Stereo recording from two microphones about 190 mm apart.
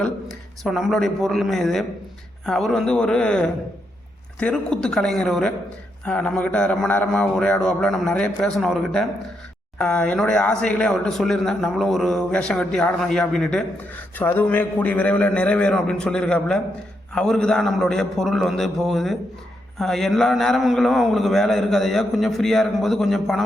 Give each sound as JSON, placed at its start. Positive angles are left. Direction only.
{"t": 0.0, "sound": "a man's voice", "side_deg": 0}